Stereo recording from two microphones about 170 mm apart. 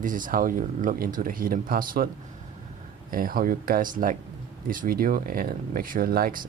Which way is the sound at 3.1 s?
60° right (ahead or behind).